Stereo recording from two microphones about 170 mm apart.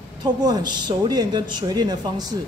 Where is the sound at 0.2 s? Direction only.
25° right (ahead or behind).